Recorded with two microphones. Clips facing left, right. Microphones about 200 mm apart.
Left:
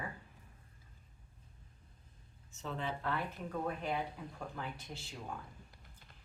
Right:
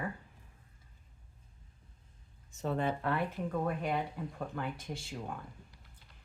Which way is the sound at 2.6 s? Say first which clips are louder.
Right 7 dB; 50° right (ahead or behind).